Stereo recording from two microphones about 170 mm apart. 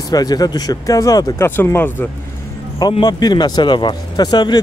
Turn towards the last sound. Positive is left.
turn(degrees=25)  # may be behind; listen again after turning